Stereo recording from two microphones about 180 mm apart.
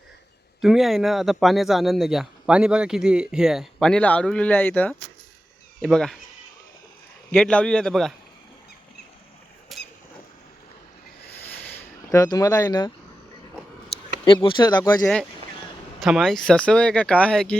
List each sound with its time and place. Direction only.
0.6 s a man's voice: centre (ahead or behind)
7.3 s a man's voice: 5° left (ahead or behind)
9.7 s squeak: centre (ahead or behind)
11.4 s a sound: 10° left (ahead or behind)
14.3 s speech: 25° left (ahead or behind)
15.0 s a man's voice: 5° left (ahead or behind)